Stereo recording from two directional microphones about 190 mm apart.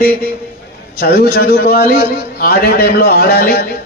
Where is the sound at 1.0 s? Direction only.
60° left (ahead or behind).